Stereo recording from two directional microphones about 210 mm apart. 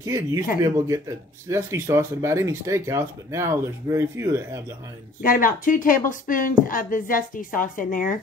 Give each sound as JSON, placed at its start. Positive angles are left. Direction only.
{"t": 0.0, "sound": "speech", "side_deg": -15}
{"t": 5.2, "sound": "speech", "side_deg": 40}